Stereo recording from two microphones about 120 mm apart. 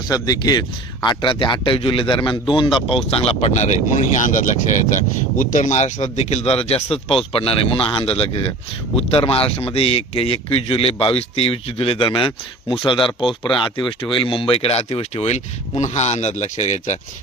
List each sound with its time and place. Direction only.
0.1 s speech: 30° left (ahead or behind)
3.1 s speech: 55° left (ahead or behind); by 17.0 s 70° left (ahead or behind)